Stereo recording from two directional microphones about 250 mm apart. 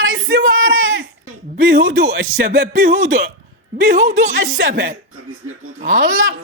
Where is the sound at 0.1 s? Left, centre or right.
Right.